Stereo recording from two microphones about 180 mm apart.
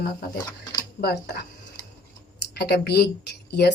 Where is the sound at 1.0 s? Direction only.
65° left (ahead or behind).